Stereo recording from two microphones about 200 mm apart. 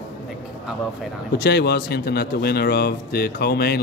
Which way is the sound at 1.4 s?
55° left (ahead or behind).